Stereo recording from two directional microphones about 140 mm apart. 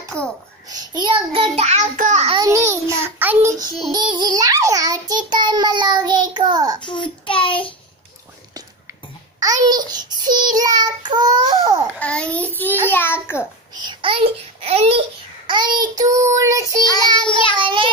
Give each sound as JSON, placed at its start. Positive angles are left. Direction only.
{"t": 0.2, "sound": "a child's voice", "side_deg": 10}
{"t": 0.7, "sound": "child singing", "side_deg": -30}
{"t": 2.0, "sound": "a child's voice", "side_deg": -60}
{"t": 2.4, "sound": "child singing", "side_deg": -20}
{"t": 3.9, "sound": "child singing", "side_deg": -30}
{"t": 6.8, "sound": "child singing", "side_deg": 35}
{"t": 9.4, "sound": "child singing", "side_deg": -25}
{"t": 12.0, "sound": "a child's voice", "side_deg": 10}
{"t": 13.8, "sound": "a child's voice", "side_deg": -40}
{"t": 16.0, "sound": "child singing", "side_deg": -25}
{"t": 16.9, "sound": "child singing", "side_deg": 35}
{"t": 17.6, "sound": "child singing", "side_deg": -35}